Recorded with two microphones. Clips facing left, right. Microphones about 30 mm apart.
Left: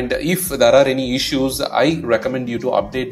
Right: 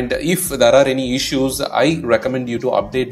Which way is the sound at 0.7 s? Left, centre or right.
Left.